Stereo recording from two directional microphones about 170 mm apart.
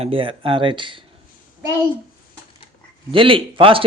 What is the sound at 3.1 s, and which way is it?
Speech, 30° right (ahead or behind).